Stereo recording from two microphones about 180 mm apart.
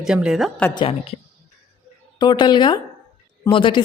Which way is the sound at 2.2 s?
25° left (ahead or behind).